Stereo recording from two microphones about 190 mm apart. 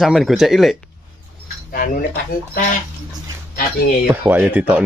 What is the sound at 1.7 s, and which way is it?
Speech, 50° left (ahead or behind).